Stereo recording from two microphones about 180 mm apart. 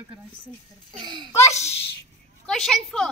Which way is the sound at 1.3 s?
15° left (ahead or behind).